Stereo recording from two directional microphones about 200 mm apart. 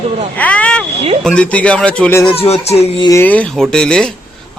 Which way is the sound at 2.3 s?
30° left (ahead or behind).